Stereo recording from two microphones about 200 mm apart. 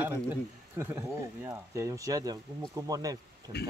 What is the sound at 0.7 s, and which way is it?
Speech, 15° right (ahead or behind).